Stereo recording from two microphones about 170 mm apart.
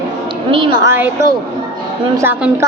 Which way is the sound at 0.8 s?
15° right (ahead or behind).